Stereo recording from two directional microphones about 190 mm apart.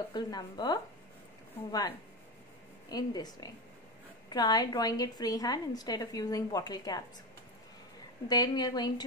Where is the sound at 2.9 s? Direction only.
20° left (ahead or behind).